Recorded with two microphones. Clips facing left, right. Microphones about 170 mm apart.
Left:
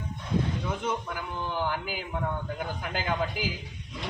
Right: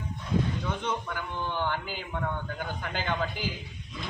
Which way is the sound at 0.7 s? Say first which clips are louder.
Left 1 dB; 10° left (ahead or behind).